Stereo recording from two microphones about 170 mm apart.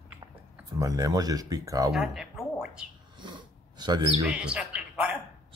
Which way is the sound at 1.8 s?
Centre (ahead or behind).